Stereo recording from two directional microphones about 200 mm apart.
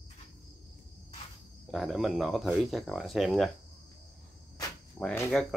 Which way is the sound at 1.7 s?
Centre (ahead or behind).